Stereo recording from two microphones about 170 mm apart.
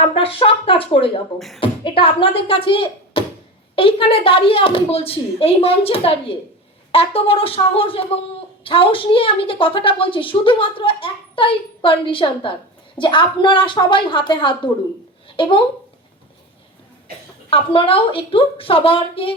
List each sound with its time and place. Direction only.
0.0 s a woman's voice: 35° left (ahead or behind)
17.5 s a woman's voice: 30° left (ahead or behind)